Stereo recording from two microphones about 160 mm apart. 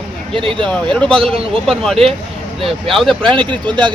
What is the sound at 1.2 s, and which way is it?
Speech, 35° right (ahead or behind).